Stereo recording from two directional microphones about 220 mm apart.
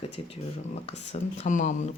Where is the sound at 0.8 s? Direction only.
30° left (ahead or behind).